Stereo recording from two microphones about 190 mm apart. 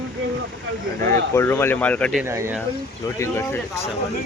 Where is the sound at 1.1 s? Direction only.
15° left (ahead or behind).